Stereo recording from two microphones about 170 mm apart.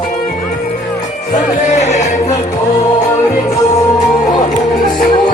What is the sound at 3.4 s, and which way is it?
Music, 40° left (ahead or behind).